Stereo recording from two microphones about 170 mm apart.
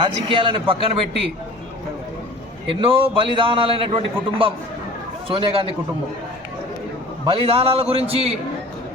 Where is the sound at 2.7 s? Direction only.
30° right (ahead or behind).